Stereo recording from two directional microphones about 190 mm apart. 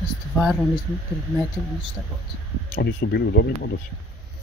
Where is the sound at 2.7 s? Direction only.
60° left (ahead or behind).